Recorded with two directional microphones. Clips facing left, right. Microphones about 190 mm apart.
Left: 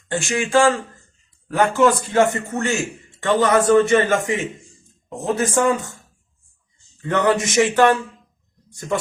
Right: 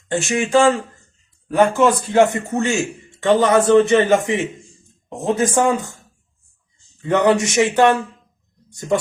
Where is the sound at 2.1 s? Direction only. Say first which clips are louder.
Right 3 dB; 20° right (ahead or behind).